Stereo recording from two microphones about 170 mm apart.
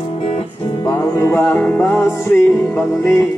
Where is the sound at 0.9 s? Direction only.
15° left (ahead or behind).